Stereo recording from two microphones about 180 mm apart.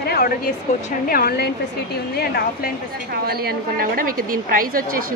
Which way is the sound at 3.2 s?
60° right (ahead or behind).